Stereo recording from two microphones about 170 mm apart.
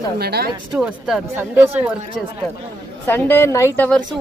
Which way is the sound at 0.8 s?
5° right (ahead or behind).